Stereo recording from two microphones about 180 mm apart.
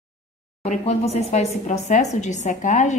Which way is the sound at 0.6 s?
35° left (ahead or behind).